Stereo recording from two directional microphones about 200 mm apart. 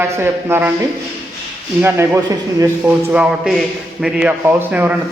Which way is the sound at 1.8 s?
15° right (ahead or behind).